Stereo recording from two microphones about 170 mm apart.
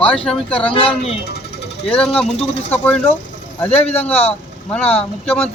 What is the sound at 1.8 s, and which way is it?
Speech, 5° left (ahead or behind).